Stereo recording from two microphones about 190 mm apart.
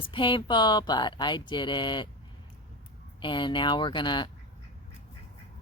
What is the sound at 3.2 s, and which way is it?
Speech, 25° left (ahead or behind).